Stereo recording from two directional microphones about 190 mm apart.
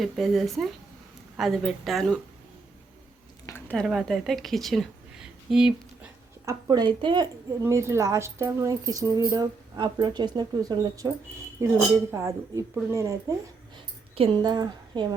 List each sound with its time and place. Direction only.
0.0 s speech: centre (ahead or behind)
3.4 s speech: 10° left (ahead or behind)
6.4 s speech: 20° right (ahead or behind)
7.6 s speech: 15° right (ahead or behind)
14.2 s speech: 20° right (ahead or behind)